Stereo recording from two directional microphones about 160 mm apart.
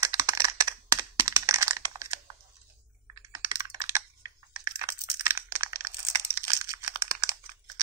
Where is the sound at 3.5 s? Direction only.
25° right (ahead or behind).